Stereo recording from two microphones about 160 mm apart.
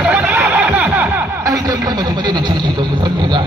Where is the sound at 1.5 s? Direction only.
25° right (ahead or behind).